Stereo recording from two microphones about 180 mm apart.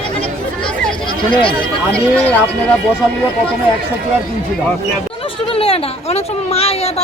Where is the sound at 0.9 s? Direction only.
25° left (ahead or behind).